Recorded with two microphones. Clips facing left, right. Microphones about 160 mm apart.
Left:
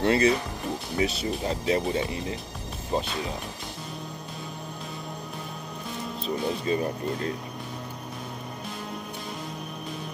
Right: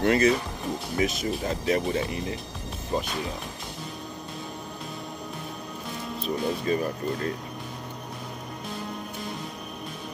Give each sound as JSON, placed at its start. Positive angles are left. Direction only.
{"t": 0.0, "sound": "speech", "side_deg": 30}
{"t": 6.2, "sound": "speech", "side_deg": 25}